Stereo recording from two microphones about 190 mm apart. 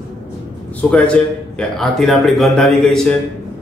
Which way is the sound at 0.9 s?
5° left (ahead or behind).